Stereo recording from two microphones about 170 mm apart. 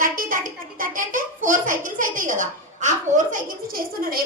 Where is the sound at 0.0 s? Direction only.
55° right (ahead or behind).